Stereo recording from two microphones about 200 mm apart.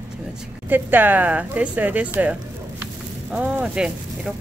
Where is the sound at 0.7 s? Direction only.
10° right (ahead or behind).